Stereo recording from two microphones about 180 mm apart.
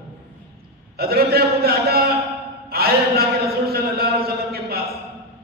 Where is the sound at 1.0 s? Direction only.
60° right (ahead or behind).